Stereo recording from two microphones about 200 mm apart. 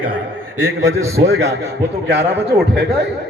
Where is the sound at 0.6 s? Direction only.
80° right.